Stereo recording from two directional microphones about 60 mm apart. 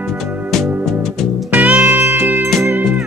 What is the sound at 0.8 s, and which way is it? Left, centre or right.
Music, centre.